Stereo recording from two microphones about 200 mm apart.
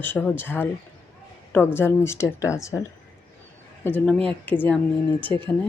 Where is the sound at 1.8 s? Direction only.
10° left (ahead or behind).